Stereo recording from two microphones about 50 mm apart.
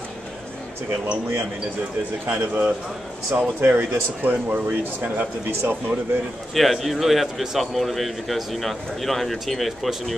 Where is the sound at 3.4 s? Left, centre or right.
Right.